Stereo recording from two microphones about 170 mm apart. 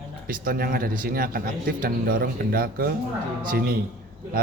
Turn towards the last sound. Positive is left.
turn(degrees=-60)  # may be behind; listen again after turning